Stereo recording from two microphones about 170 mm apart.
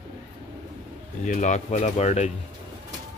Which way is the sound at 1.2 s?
45° left (ahead or behind).